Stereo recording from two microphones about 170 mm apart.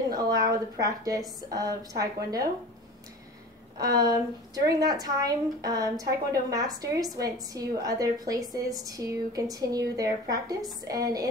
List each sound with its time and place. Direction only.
0.1 s a woman's voice: 20° right (ahead or behind)
3.7 s a woman's voice: 20° right (ahead or behind)